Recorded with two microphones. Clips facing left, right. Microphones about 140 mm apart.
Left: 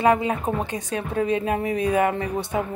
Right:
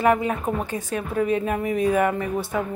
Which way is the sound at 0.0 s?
20° left (ahead or behind).